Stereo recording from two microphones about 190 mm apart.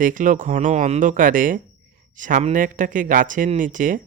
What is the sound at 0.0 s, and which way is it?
Speech, 45° right (ahead or behind).